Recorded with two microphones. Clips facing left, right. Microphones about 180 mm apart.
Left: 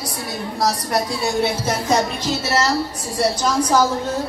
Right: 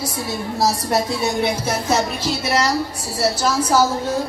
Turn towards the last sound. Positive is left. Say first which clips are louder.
# even
turn(degrees=-10)  # may be behind; listen again after turning